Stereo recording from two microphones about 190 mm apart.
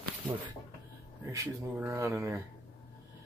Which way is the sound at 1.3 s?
15° right (ahead or behind).